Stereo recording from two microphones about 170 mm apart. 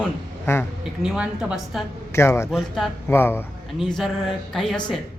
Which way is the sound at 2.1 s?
15° left (ahead or behind).